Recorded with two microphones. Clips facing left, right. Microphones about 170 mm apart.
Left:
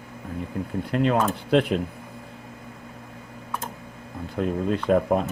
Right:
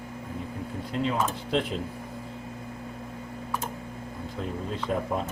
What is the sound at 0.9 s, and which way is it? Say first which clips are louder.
Speech: left 6 dB; 65° left (ahead or behind).